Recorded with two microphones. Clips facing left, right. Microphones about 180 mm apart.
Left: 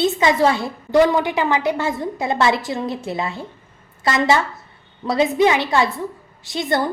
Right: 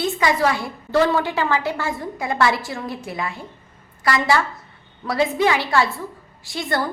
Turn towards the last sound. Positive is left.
turn(degrees=20)  # may be behind; listen again after turning